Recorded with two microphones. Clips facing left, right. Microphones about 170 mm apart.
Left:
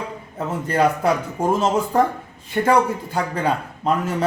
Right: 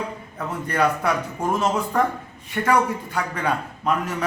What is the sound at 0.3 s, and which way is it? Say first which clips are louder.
A man's voice: left 3 dB; 25° left (ahead or behind).